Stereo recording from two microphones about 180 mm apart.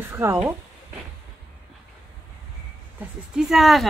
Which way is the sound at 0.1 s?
15° right (ahead or behind).